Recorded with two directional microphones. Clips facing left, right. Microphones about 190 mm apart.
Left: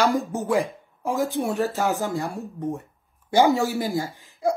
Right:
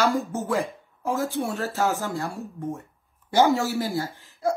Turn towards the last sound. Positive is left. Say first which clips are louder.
# left 1 dB
turn(degrees=15)  # may be behind; listen again after turning